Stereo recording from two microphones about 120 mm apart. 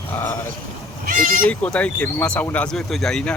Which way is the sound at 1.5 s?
10° left (ahead or behind).